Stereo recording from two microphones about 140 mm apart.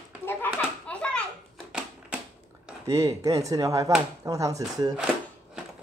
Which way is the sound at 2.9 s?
20° right (ahead or behind).